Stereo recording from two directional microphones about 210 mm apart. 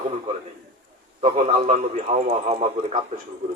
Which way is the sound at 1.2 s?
30° right (ahead or behind).